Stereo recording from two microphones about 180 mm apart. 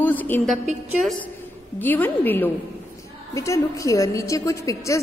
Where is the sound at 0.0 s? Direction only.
10° left (ahead or behind).